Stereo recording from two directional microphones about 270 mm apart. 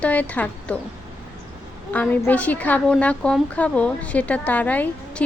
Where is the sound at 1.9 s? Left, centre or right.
Centre.